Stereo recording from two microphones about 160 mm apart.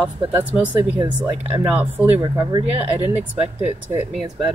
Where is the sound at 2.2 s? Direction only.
30° right (ahead or behind).